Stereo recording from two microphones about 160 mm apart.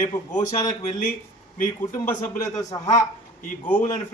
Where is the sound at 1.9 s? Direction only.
50° left (ahead or behind).